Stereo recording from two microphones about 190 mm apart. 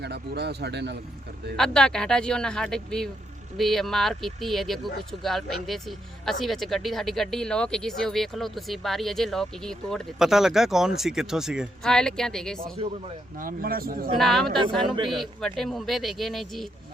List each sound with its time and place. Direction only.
0.0 s speech: 60° right (ahead or behind)
1.5 s speech: 5° left (ahead or behind)
13.4 s speech: 50° right (ahead or behind)
14.2 s speech: centre (ahead or behind)